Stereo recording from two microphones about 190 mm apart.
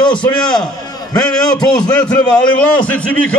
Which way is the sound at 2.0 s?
5° left (ahead or behind).